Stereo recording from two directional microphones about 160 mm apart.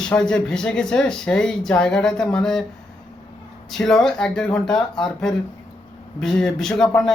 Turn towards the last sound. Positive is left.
turn(degrees=5)  # may be behind; listen again after turning